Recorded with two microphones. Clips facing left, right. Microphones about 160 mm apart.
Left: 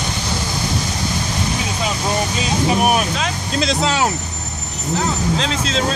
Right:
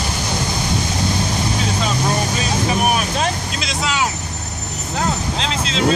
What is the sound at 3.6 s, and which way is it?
Vehicle, 35° left (ahead or behind).